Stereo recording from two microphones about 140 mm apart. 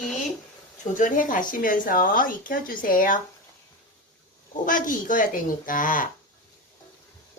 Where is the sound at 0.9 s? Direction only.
70° left (ahead or behind).